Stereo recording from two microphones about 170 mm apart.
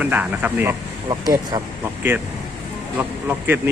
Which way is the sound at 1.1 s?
25° right (ahead or behind).